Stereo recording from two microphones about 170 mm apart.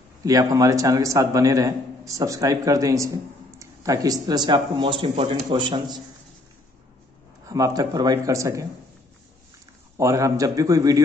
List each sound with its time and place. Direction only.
0.2 s a man's voice: 20° right (ahead or behind)
7.4 s a man's voice: 20° right (ahead or behind)
9.9 s a man's voice: 20° right (ahead or behind)